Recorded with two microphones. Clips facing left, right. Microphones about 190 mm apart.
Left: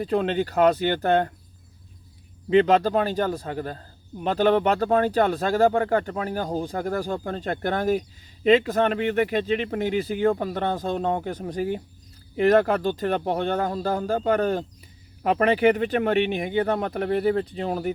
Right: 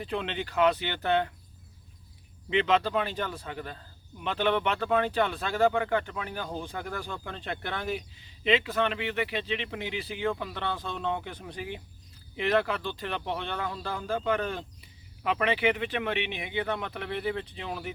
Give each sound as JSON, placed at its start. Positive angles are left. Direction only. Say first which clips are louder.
{"t": 0.0, "sound": "speech", "louder": "left 10 dB", "side_deg": 40}
{"t": 2.5, "sound": "a man's voice", "louder": "left 7 dB", "side_deg": 40}